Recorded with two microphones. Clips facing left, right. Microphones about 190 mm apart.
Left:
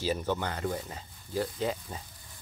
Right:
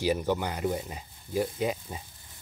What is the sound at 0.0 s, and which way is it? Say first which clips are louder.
Speech: right 3 dB; 15° right (ahead or behind).